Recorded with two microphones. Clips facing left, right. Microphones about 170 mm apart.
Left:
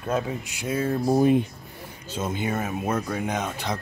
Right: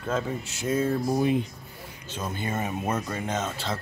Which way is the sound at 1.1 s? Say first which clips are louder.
Left 8 dB; 40° left (ahead or behind).